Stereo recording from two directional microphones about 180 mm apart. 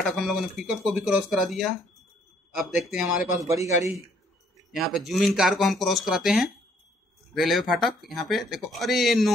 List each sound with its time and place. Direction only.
0.0 s speech: centre (ahead or behind)
3.3 s a man's voice: 15° right (ahead or behind)
4.7 s speech: centre (ahead or behind)